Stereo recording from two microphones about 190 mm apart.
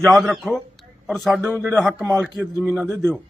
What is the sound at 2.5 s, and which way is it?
Speech, 10° right (ahead or behind).